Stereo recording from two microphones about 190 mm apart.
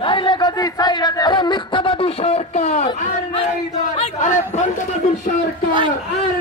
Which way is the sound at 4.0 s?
40° left (ahead or behind).